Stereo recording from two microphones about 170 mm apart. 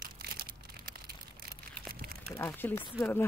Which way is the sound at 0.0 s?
65° right (ahead or behind).